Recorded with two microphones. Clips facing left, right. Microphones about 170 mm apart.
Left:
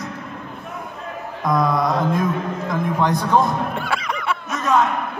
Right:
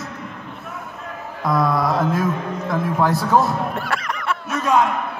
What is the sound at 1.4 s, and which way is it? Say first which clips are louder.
A man's voice: even; 5° right (ahead or behind).